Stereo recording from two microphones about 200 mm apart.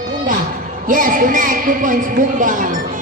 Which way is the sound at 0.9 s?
40° right (ahead or behind).